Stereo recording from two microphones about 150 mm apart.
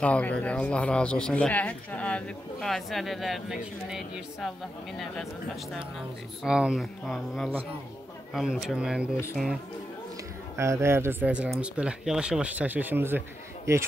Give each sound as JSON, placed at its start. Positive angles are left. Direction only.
{"t": 0.0, "sound": "speech", "side_deg": 10}
{"t": 6.4, "sound": "speech", "side_deg": -5}
{"t": 10.6, "sound": "speech", "side_deg": -15}